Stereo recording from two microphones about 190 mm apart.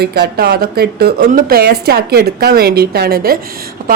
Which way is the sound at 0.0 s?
60° right (ahead or behind).